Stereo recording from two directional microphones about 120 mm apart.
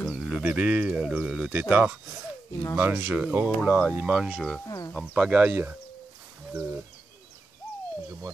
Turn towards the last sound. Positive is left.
turn(degrees=-15)  # may be behind; listen again after turning